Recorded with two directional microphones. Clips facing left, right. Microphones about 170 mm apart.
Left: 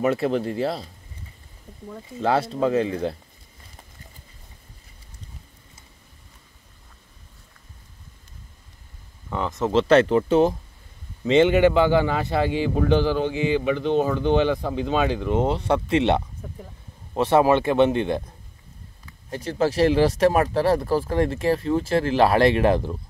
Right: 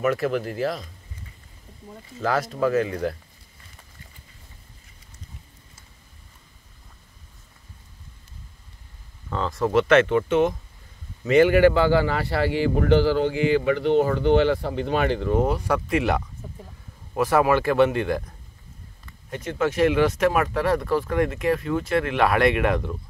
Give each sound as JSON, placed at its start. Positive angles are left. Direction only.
{"t": 0.0, "sound": "a man's voice", "side_deg": 30}
{"t": 2.2, "sound": "a man's voice", "side_deg": 30}
{"t": 9.3, "sound": "speech", "side_deg": 20}
{"t": 11.2, "sound": "a man's voice", "side_deg": 25}
{"t": 19.3, "sound": "speech", "side_deg": 35}